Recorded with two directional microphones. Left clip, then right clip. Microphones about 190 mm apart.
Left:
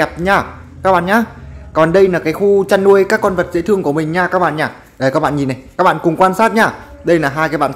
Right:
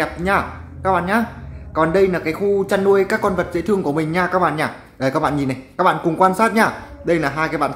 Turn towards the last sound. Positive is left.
turn(degrees=20)  # may be behind; listen again after turning